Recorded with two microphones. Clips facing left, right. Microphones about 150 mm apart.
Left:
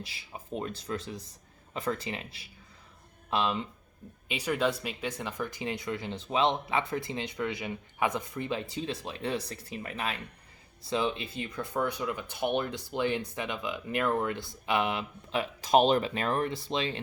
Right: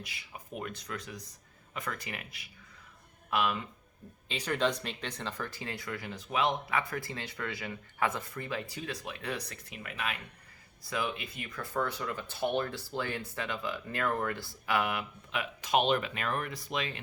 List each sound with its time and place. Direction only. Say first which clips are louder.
0.0 s speech: left 3 dB; 30° left (ahead or behind)
4.3 s speech: left 2 dB; 10° left (ahead or behind); by 17.0 s 30° left (ahead or behind)